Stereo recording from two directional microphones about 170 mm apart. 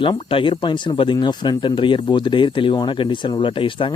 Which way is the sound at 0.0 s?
30° left (ahead or behind).